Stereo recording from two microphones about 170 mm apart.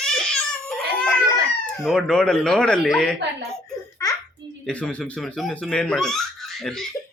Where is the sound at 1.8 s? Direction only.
Centre (ahead or behind).